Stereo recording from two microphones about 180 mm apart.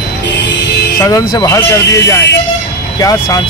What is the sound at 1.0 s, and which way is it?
Speech, 20° left (ahead or behind).